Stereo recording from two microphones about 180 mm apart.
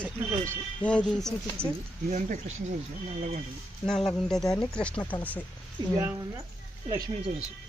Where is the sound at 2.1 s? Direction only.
40° right (ahead or behind).